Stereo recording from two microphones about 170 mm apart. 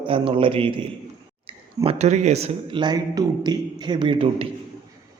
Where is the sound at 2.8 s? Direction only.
25° right (ahead or behind).